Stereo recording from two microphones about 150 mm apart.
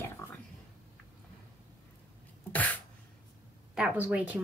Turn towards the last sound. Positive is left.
turn(degrees=-10)  # may be behind; listen again after turning